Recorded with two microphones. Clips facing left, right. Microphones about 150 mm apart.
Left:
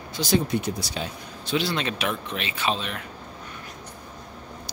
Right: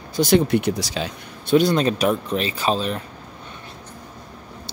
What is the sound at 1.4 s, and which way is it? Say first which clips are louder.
Speech: right 9 dB; 45° right (ahead or behind).